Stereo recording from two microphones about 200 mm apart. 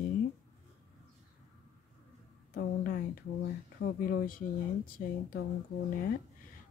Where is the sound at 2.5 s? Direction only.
45° left (ahead or behind).